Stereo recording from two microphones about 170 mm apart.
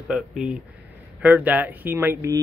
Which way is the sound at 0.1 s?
5° right (ahead or behind).